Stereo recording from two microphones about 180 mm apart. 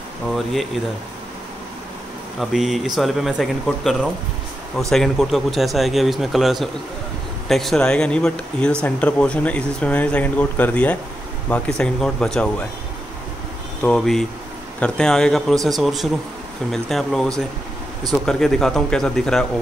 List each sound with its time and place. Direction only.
0.3 s a man's voice: centre (ahead or behind)
2.5 s a man's voice: centre (ahead or behind)
13.8 s a man's voice: 5° left (ahead or behind)